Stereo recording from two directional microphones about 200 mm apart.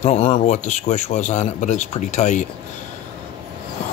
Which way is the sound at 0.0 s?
30° left (ahead or behind).